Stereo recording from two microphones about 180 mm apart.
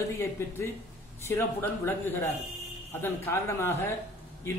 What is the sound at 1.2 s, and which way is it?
A woman's voice, 15° left (ahead or behind).